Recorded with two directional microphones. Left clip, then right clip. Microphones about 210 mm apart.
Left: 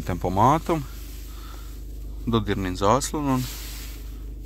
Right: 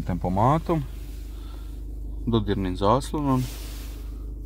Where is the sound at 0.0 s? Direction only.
Centre (ahead or behind).